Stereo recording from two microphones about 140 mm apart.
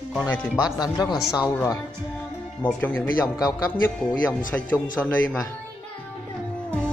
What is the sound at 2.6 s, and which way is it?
Speech, 10° left (ahead or behind).